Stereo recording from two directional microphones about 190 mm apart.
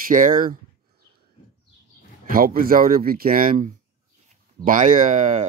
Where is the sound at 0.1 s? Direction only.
45° right (ahead or behind).